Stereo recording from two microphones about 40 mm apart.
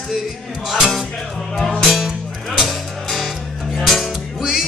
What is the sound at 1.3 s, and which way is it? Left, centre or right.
Music, centre.